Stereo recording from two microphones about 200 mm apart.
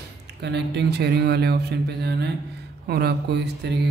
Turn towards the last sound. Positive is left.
turn(degrees=-55)  # may be behind; listen again after turning